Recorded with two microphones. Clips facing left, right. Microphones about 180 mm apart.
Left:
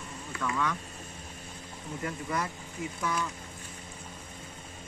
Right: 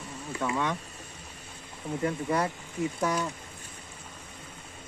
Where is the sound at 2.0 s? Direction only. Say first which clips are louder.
Right 6 dB; 30° right (ahead or behind).